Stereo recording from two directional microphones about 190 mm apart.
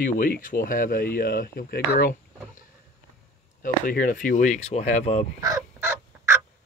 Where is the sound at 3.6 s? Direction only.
50° left (ahead or behind).